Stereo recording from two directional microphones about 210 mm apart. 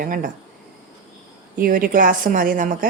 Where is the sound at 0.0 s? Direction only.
40° right (ahead or behind).